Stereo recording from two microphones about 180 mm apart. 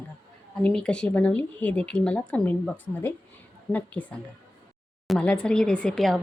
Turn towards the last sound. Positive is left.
turn(degrees=5)  # may be behind; listen again after turning